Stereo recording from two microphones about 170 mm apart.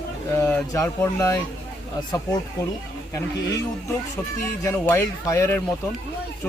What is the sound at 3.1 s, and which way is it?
Speech, 20° left (ahead or behind).